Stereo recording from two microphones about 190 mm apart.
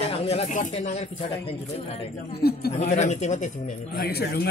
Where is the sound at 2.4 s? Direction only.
55° left (ahead or behind).